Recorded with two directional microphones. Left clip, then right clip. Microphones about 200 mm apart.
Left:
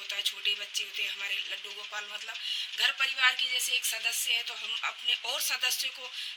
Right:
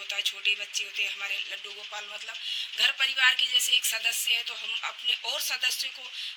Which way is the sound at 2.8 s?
20° right (ahead or behind).